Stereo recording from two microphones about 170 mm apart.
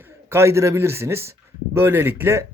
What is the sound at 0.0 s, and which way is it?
Speech, 15° right (ahead or behind).